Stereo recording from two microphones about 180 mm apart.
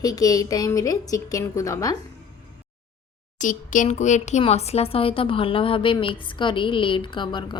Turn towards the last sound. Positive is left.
turn(degrees=25)  # may be behind; listen again after turning